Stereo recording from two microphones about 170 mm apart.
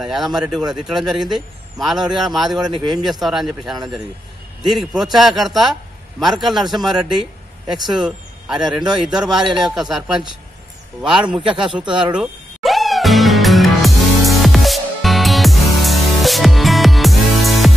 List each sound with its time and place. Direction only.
0.0 s a man's voice: centre (ahead or behind)
11.9 s music: 5° right (ahead or behind)